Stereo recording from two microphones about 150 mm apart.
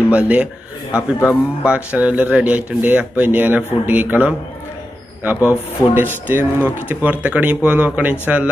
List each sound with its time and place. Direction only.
0.1 s speech: 10° right (ahead or behind)
0.9 s speech: 15° left (ahead or behind)
1.6 s speech: 10° right (ahead or behind)